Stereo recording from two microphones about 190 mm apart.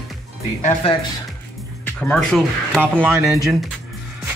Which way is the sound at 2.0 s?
5° left (ahead or behind).